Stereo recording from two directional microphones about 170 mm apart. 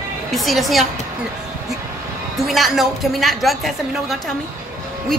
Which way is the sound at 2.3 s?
Centre (ahead or behind).